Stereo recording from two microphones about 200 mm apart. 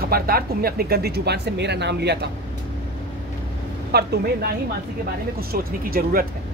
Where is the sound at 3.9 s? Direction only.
55° right (ahead or behind).